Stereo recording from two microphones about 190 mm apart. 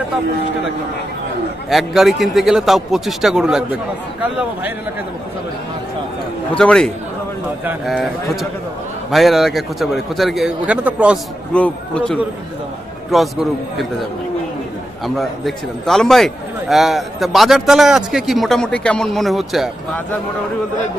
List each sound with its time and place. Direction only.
1.7 s a man's voice: centre (ahead or behind)
6.5 s a man's voice: 5° left (ahead or behind)
7.9 s a man's voice: centre (ahead or behind)
11.5 s a man's voice: 5° left (ahead or behind)
15.0 s a man's voice: centre (ahead or behind)